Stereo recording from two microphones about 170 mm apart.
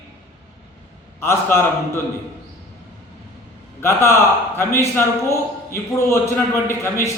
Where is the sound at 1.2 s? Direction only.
15° left (ahead or behind).